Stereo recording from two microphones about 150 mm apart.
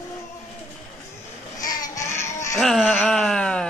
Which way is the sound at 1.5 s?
25° left (ahead or behind).